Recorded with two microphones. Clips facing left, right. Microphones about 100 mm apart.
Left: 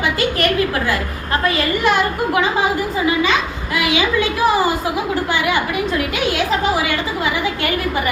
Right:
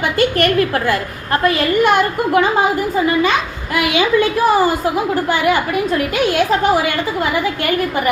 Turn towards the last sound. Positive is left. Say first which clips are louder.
# right 3 dB
turn(degrees=-50)  # may be behind; listen again after turning